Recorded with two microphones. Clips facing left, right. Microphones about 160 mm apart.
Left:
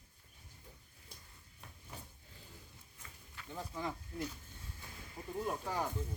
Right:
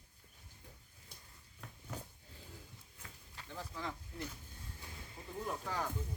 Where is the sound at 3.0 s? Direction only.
80° right.